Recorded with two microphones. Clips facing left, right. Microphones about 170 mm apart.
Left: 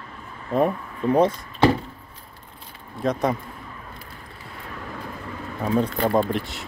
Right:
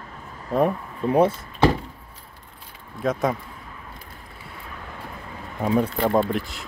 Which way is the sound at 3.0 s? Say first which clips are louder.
Even; centre (ahead or behind).